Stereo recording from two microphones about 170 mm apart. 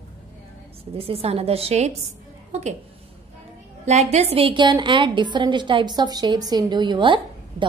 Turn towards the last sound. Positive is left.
turn(degrees=-30)  # may be behind; listen again after turning